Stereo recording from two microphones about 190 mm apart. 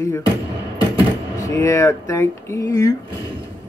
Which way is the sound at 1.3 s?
15° left (ahead or behind).